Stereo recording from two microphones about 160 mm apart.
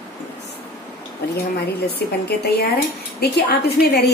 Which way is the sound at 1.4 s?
80° left.